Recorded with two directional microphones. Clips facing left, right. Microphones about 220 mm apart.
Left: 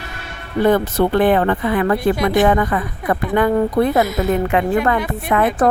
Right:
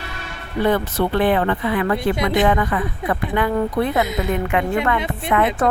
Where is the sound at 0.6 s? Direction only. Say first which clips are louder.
Left 4 dB; 45° left (ahead or behind).